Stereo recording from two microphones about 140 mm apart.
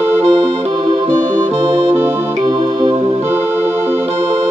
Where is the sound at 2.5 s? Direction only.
35° right (ahead or behind).